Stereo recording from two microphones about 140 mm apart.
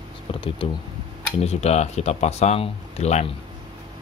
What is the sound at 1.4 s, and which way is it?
Speech, 50° left (ahead or behind).